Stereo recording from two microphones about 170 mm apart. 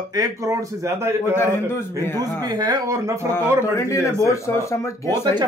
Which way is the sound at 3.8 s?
15° left (ahead or behind).